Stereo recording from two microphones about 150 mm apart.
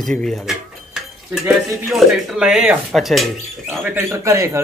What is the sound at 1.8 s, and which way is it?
Speech, centre (ahead or behind).